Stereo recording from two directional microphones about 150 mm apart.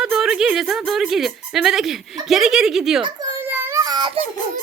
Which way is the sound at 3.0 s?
20° right (ahead or behind).